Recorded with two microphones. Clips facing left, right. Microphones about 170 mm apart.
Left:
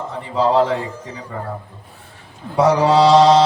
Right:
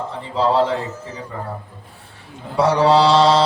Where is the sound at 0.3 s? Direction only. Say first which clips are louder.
Left 1 dB; 30° right (ahead or behind).